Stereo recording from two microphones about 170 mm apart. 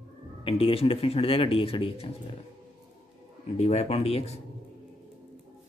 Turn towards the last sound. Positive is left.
turn(degrees=35)  # may be behind; listen again after turning